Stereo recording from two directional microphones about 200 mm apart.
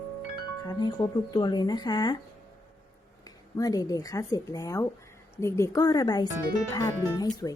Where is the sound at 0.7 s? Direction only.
20° left (ahead or behind).